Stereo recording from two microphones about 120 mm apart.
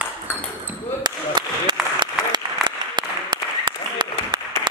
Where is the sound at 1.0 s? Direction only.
35° right (ahead or behind).